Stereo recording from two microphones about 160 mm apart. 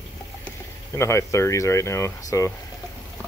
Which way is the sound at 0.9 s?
20° left (ahead or behind).